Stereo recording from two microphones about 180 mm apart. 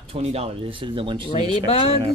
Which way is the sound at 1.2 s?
35° left (ahead or behind).